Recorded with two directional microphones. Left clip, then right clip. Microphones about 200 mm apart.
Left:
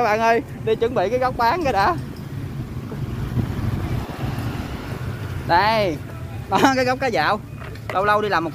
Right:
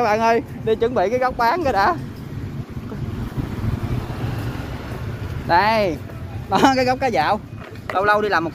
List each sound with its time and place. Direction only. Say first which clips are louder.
0.0 s speech: right 1 dB; centre (ahead or behind)
4.2 s vehicle: even; 55° left (ahead or behind)
5.5 s speech: right 1 dB; centre (ahead or behind)